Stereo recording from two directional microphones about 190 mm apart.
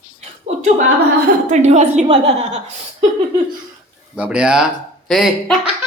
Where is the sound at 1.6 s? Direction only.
35° right (ahead or behind).